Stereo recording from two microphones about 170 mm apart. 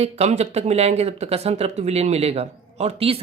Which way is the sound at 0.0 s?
40° right (ahead or behind).